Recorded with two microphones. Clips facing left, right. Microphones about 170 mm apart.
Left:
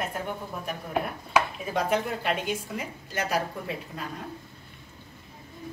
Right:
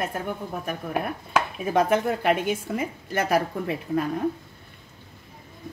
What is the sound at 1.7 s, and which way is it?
Speech, 55° right (ahead or behind).